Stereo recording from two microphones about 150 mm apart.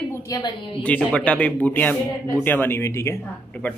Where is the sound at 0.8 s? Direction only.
10° left (ahead or behind).